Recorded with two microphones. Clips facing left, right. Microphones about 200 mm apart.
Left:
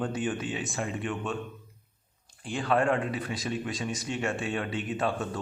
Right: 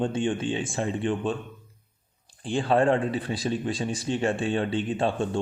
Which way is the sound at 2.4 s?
30° right (ahead or behind).